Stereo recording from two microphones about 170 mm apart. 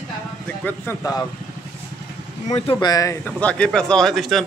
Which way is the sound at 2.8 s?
20° left (ahead or behind).